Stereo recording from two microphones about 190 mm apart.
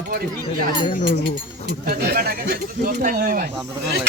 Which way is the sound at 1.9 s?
55° right (ahead or behind).